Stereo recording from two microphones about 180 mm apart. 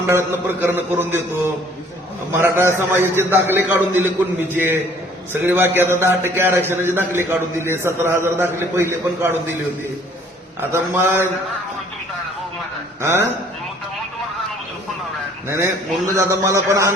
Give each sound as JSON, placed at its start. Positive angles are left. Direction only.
{"t": 0.1, "sound": "a man's voice", "side_deg": -15}
{"t": 2.4, "sound": "a man's voice", "side_deg": -10}
{"t": 10.6, "sound": "a man's voice", "side_deg": -15}
{"t": 13.0, "sound": "a man's voice", "side_deg": -15}
{"t": 15.4, "sound": "a man's voice", "side_deg": -15}